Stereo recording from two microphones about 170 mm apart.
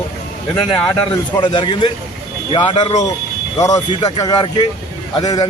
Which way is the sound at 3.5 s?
20° left (ahead or behind).